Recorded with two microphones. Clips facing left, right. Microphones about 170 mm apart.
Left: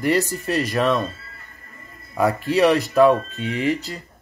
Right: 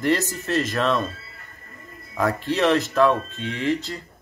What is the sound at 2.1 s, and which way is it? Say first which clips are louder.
Speech: left 4 dB; 10° left (ahead or behind).